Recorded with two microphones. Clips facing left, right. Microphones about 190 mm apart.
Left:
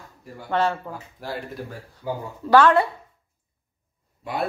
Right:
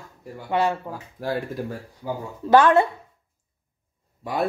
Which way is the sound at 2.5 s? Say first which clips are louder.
Right 1 dB; 20° right (ahead or behind).